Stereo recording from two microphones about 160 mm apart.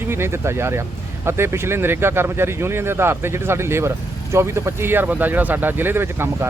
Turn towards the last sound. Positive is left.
turn(degrees=-15)  # may be behind; listen again after turning